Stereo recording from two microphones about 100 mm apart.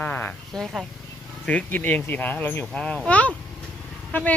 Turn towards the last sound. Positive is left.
turn(degrees=15)  # may be behind; listen again after turning